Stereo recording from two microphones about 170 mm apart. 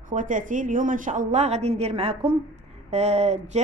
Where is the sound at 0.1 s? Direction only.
50° right (ahead or behind).